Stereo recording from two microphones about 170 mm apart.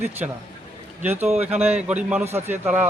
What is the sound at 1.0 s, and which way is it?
Speech, 10° right (ahead or behind).